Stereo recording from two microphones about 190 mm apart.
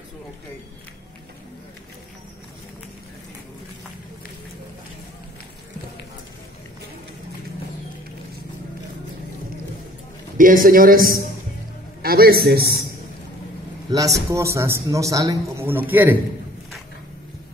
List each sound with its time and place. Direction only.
10.3 s a man's voice: 45° right (ahead or behind)
13.8 s a man's voice: 20° right (ahead or behind)